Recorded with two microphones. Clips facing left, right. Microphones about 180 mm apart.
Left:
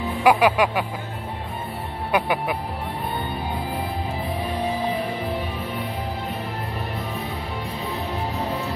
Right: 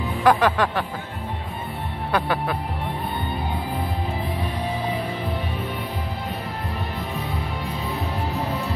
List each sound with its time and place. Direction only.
0.2 s speech: 10° left (ahead or behind)
2.1 s speech: 15° left (ahead or behind)